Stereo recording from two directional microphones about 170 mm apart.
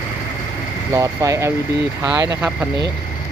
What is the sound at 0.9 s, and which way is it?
Speech, 20° right (ahead or behind).